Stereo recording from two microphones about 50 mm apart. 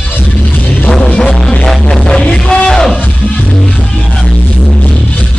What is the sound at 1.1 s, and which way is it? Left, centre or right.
Music, centre.